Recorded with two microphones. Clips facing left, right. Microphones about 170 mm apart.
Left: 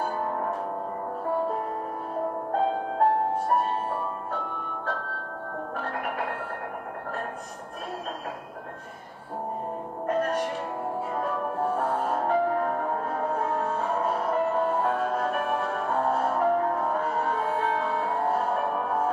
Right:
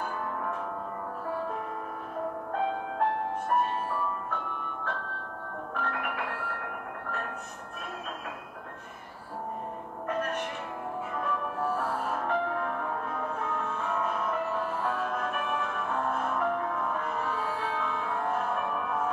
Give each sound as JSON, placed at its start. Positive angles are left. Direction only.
{"t": 0.0, "sound": "music", "side_deg": 40}
{"t": 2.5, "sound": "music", "side_deg": 35}
{"t": 5.8, "sound": "music", "side_deg": 40}
{"t": 10.0, "sound": "music", "side_deg": 35}